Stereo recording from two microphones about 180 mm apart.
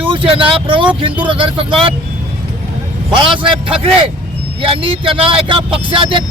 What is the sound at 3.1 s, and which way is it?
Speech, 25° right (ahead or behind).